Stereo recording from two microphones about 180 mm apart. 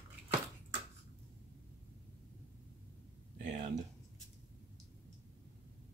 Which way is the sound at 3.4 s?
45° right (ahead or behind).